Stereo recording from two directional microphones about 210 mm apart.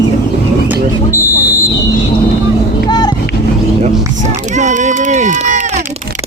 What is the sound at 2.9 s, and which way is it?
Vehicle, 20° left (ahead or behind).